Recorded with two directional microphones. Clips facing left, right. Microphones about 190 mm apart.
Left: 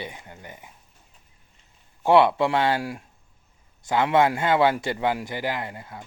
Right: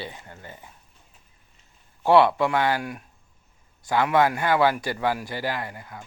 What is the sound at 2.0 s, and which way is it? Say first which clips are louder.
A man's voice: even; 20° left (ahead or behind).